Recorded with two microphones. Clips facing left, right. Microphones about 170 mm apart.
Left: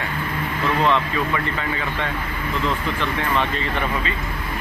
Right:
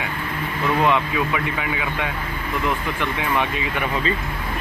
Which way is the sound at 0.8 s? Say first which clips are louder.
Even; 10° right (ahead or behind).